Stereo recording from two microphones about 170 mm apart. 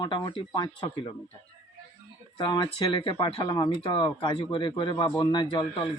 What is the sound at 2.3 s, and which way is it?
Speech, 30° left (ahead or behind).